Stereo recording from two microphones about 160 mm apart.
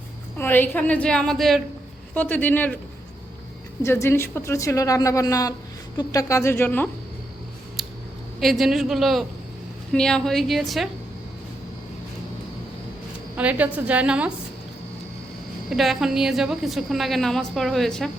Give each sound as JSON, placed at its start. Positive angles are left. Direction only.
{"t": 0.3, "sound": "a woman's voice", "side_deg": 10}
{"t": 3.8, "sound": "a woman's voice", "side_deg": 15}
{"t": 8.4, "sound": "a woman's voice", "side_deg": 0}
{"t": 13.3, "sound": "a woman's voice", "side_deg": -10}
{"t": 15.7, "sound": "a woman's voice", "side_deg": 0}